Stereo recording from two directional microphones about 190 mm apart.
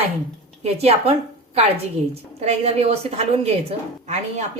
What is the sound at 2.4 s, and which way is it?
Speech, 35° right (ahead or behind).